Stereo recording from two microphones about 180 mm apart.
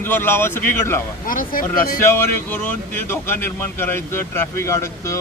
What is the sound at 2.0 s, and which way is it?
Speech, 15° left (ahead or behind).